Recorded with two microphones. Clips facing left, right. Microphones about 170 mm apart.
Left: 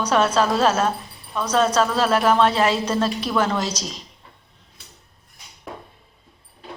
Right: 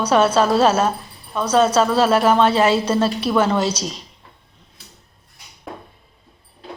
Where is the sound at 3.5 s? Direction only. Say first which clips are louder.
Right 5 dB; 30° right (ahead or behind).